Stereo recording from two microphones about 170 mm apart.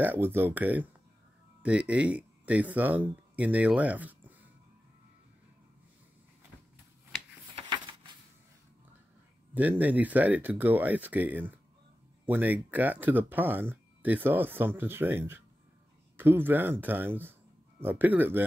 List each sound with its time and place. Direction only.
0.0 s speech: 10° right (ahead or behind)
7.5 s a sound: 25° right (ahead or behind)
9.5 s speech: 10° right (ahead or behind)